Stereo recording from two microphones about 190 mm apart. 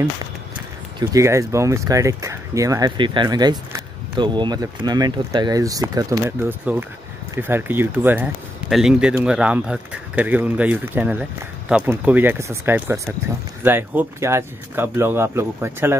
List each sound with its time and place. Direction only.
0.9 s speech: 15° right (ahead or behind)